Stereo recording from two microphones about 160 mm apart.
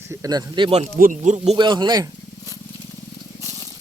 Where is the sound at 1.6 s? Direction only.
30° right (ahead or behind).